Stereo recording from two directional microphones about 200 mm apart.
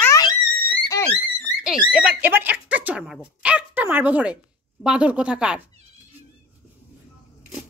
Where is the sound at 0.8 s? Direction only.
15° left (ahead or behind).